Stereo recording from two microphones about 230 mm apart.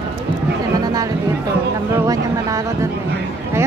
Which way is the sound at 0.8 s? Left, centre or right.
Centre.